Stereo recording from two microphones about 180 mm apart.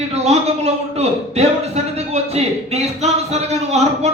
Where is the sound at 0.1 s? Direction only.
35° right (ahead or behind).